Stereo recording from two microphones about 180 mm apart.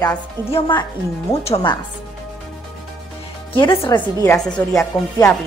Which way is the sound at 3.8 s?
15° left (ahead or behind).